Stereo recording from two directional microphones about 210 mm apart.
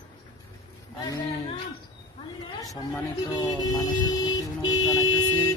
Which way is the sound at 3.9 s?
20° left (ahead or behind).